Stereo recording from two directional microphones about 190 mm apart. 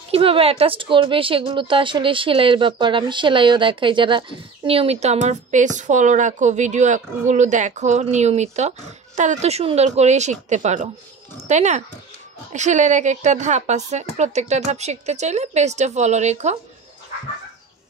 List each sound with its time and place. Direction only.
0.1 s speech: 30° right (ahead or behind)